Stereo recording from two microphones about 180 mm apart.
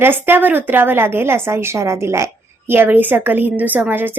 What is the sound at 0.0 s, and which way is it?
A woman's voice, 10° right (ahead or behind).